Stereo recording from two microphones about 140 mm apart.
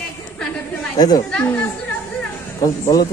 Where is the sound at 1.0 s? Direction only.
25° left (ahead or behind).